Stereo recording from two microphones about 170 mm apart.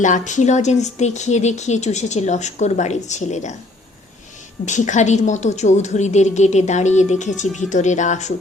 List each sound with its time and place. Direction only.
0.0 s a woman's voice: 45° left (ahead or behind)
4.6 s a woman's voice: 45° left (ahead or behind)